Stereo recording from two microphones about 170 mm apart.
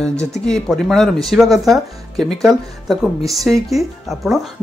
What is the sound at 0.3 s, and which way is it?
Speech, centre (ahead or behind).